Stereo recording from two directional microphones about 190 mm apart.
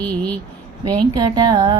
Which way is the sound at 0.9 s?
25° right (ahead or behind).